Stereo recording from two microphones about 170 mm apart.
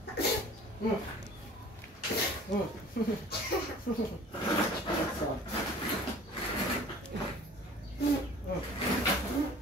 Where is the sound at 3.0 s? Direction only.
65° left (ahead or behind).